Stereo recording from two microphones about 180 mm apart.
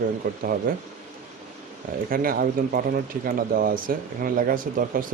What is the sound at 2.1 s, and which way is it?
Speech, 55° right (ahead or behind).